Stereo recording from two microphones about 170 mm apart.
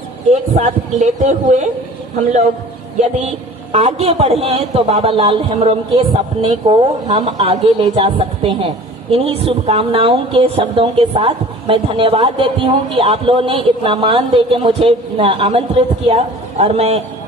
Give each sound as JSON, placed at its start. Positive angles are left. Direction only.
{"t": 0.3, "sound": "speech", "side_deg": -40}
{"t": 3.2, "sound": "a woman's voice", "side_deg": -40}